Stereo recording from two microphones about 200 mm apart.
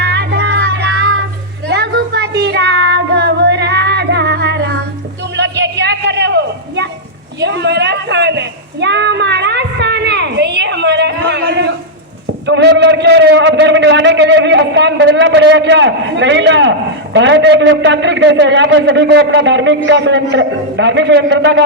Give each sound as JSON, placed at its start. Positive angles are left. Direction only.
{"t": 0.0, "sound": "child singing", "side_deg": -60}
{"t": 5.4, "sound": "a sound", "side_deg": -60}
{"t": 12.5, "sound": "a man's voice", "side_deg": -60}